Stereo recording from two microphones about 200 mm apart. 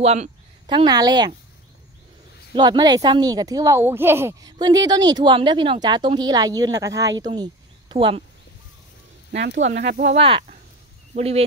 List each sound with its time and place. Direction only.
0.0 s speech: 30° right (ahead or behind)
2.5 s speech: 20° right (ahead or behind)
9.3 s speech: 55° right (ahead or behind)
9.8 s speech: 40° right (ahead or behind)